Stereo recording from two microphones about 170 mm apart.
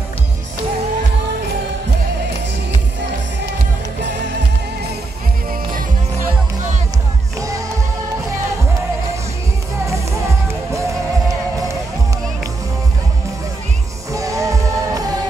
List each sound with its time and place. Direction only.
14.1 s music: 20° right (ahead or behind)